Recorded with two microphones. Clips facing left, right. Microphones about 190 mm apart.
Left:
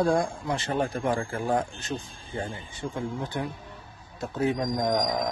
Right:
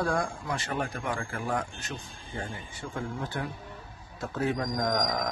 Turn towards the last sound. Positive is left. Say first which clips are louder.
# left 3 dB
turn(degrees=20)  # may be behind; listen again after turning